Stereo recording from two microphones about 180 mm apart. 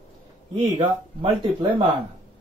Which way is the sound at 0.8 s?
25° right (ahead or behind).